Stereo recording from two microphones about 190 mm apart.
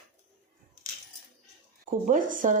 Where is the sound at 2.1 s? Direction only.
45° right (ahead or behind).